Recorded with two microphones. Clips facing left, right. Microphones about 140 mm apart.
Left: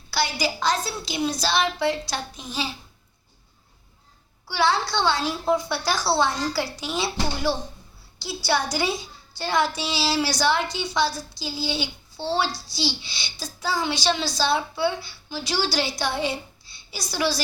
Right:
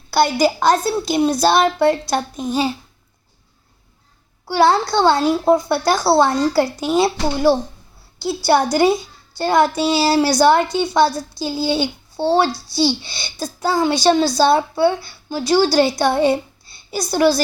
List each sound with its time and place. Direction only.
0.1 s a woman's voice: 50° right (ahead or behind)
4.4 s a woman's voice: 50° right (ahead or behind)